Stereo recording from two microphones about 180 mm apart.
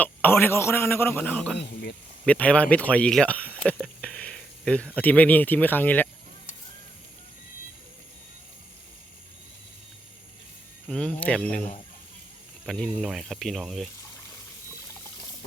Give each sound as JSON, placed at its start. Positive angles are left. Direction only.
{"t": 0.0, "sound": "a man's voice", "side_deg": 10}
{"t": 1.5, "sound": "speech", "side_deg": 65}
{"t": 2.2, "sound": "a man's voice", "side_deg": 5}
{"t": 3.8, "sound": "a sound", "side_deg": 5}
{"t": 4.9, "sound": "a man's voice", "side_deg": 10}
{"t": 10.8, "sound": "a sound", "side_deg": 5}
{"t": 12.6, "sound": "speech", "side_deg": 5}